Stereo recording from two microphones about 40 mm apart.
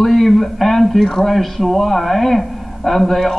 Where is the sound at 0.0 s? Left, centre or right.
Centre.